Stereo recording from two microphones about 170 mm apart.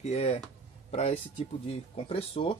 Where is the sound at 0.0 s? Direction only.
45° left (ahead or behind).